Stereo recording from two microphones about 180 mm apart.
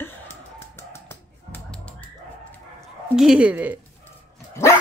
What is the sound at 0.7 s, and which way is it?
Music, 15° left (ahead or behind).